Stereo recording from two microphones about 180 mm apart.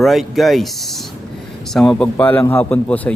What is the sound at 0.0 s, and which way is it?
Speech, centre (ahead or behind).